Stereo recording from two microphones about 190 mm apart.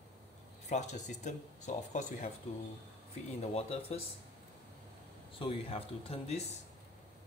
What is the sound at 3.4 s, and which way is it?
Speech, 35° left (ahead or behind).